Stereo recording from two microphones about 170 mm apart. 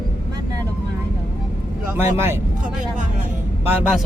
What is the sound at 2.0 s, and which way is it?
Speech, 15° right (ahead or behind).